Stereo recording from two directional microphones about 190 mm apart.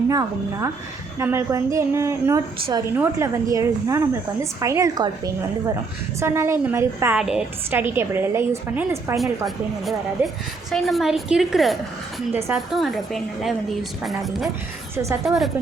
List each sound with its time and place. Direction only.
0.1 s a woman's voice: 20° right (ahead or behind)
10.2 s a woman's voice: 10° right (ahead or behind)
10.7 s a woman's voice: centre (ahead or behind)
12.3 s a woman's voice: 15° right (ahead or behind)
12.5 s a woman's voice: centre (ahead or behind)
14.9 s a woman's voice: 15° right (ahead or behind)
15.2 s a woman's voice: centre (ahead or behind)